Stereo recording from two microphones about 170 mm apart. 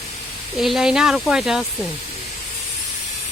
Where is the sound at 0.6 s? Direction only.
Centre (ahead or behind).